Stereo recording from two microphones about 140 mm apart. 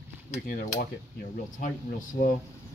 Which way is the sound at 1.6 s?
70° left (ahead or behind).